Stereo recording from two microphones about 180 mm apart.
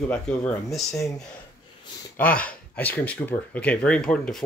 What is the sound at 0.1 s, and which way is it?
Speech, 5° left (ahead or behind).